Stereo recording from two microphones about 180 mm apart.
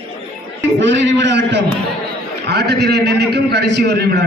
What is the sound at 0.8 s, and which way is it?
A man's voice, 85° right.